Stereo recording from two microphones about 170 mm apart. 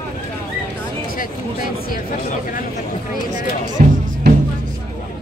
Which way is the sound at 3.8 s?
55° right (ahead or behind).